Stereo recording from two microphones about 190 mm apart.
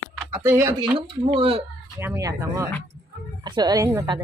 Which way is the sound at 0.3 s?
15° right (ahead or behind).